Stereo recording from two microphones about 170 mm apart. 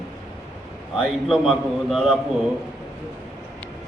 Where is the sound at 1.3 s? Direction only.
Centre (ahead or behind).